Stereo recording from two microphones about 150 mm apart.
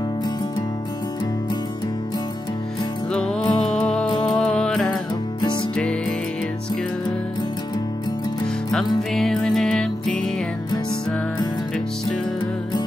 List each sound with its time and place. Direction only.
3.1 s music: 5° left (ahead or behind)
5.4 s music: 30° left (ahead or behind)
5.8 s music: 5° left (ahead or behind)
9.1 s music: centre (ahead or behind)